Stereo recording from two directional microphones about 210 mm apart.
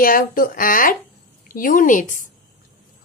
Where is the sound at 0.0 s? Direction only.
45° left (ahead or behind).